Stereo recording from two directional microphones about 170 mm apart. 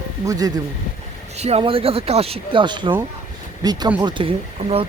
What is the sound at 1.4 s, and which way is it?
Speech, 35° right (ahead or behind).